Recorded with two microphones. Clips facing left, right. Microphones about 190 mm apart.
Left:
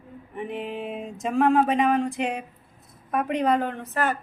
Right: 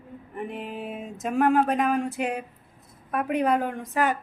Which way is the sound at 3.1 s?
5° right (ahead or behind).